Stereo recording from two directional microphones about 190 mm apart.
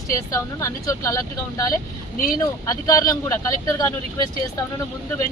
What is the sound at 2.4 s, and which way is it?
Speech, 15° left (ahead or behind).